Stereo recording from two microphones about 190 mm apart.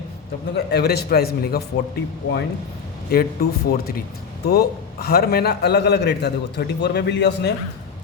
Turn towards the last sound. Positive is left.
turn(degrees=65)  # may be behind; listen again after turning